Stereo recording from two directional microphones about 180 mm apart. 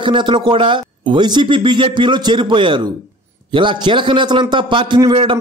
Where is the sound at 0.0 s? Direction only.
25° right (ahead or behind).